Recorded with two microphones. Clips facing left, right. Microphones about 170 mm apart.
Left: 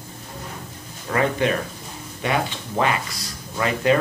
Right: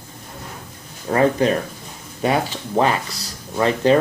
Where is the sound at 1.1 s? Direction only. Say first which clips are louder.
Right 4 dB; 35° right (ahead or behind).